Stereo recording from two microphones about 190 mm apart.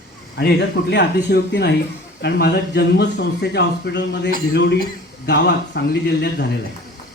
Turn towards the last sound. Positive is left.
turn(degrees=60)  # may be behind; listen again after turning